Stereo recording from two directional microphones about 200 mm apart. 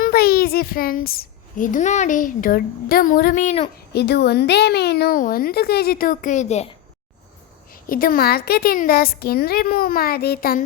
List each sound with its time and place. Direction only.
0.0 s a child's voice: 50° left (ahead or behind); by 3.7 s 35° left (ahead or behind)
3.9 s a child's voice: 55° left (ahead or behind); by 6.7 s 35° left (ahead or behind)
7.7 s a child's voice: 45° left (ahead or behind)